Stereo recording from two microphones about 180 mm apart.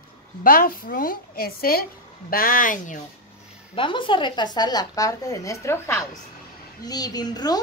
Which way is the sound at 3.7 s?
30° left (ahead or behind).